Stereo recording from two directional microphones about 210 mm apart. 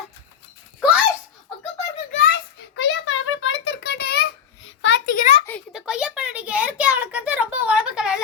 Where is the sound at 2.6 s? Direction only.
55° left (ahead or behind).